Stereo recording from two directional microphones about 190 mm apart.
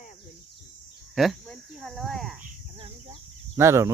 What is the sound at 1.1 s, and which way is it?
Cricket, centre (ahead or behind).